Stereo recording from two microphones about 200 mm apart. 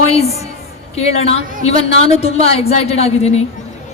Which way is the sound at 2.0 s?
30° left (ahead or behind).